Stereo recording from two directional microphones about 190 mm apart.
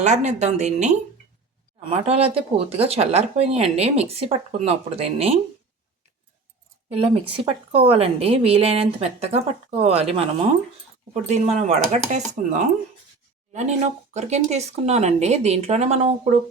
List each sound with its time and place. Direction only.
0.0 s speech: 40° right (ahead or behind)
6.9 s speech: 30° right (ahead or behind)
11.1 s speech: 35° right (ahead or behind)
13.5 s speech: 40° right (ahead or behind)